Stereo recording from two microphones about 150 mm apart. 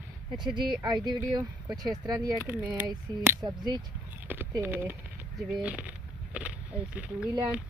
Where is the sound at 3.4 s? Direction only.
30° right (ahead or behind).